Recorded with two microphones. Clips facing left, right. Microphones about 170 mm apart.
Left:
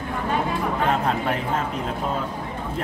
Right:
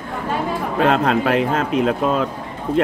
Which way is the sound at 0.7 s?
80° right.